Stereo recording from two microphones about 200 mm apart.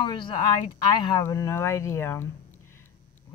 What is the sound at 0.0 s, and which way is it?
Speech, 25° left (ahead or behind).